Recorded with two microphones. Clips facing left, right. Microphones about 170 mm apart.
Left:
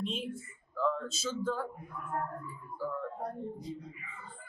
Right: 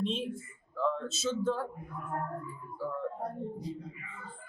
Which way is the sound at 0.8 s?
25° right (ahead or behind).